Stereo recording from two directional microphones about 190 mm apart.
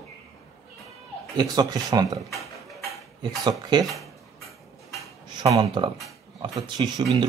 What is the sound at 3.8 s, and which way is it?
Speech, centre (ahead or behind).